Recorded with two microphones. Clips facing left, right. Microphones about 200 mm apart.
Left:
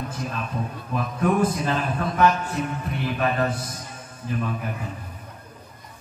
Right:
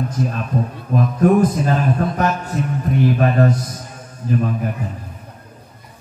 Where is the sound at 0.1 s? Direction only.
40° right (ahead or behind).